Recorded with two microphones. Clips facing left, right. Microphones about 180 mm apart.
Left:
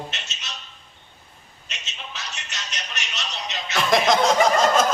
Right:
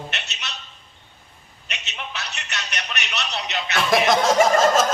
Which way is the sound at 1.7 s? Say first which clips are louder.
Right 5 dB; 65° right (ahead or behind).